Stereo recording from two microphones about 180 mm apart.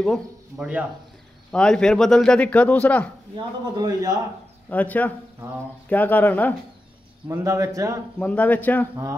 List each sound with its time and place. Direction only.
0.0 s speech: centre (ahead or behind)
3.3 s a man's voice: 20° right (ahead or behind)
4.6 s speech: 10° left (ahead or behind)
7.2 s speech: 15° right (ahead or behind)
8.2 s speech: 10° left (ahead or behind)